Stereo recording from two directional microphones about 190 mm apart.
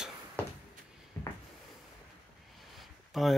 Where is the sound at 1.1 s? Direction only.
15° left (ahead or behind).